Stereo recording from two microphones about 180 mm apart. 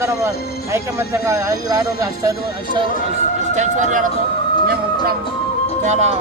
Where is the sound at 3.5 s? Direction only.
40° right (ahead or behind).